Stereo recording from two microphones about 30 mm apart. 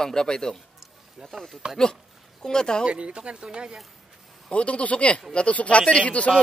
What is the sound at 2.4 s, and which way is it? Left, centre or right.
Speech, left.